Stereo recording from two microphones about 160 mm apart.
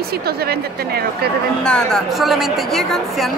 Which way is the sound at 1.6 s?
5° left (ahead or behind).